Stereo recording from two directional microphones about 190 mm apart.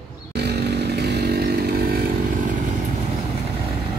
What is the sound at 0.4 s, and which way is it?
Chainsaw, 60° right (ahead or behind).